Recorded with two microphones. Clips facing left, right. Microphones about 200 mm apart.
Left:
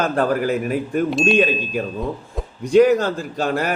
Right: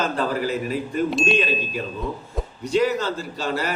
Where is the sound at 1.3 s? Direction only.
50° left (ahead or behind).